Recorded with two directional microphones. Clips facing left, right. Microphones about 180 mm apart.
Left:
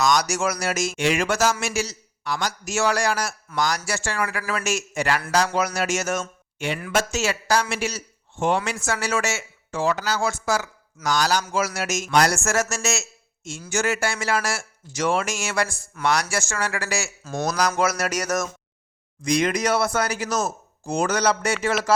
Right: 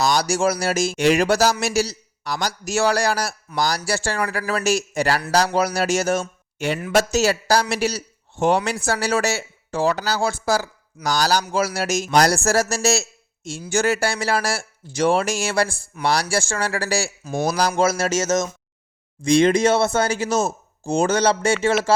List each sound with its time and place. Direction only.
0.0 s speech: 30° right (ahead or behind)